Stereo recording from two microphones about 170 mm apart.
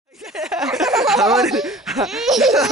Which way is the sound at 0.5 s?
5° right (ahead or behind).